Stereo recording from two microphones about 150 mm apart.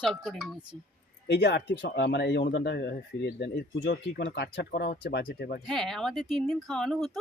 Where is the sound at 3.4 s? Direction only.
90° left.